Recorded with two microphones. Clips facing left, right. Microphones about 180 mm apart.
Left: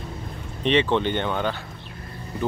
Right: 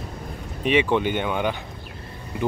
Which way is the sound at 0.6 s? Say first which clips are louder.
Even; 10° right (ahead or behind).